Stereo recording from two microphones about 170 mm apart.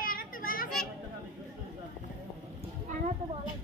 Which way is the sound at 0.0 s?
55° left (ahead or behind).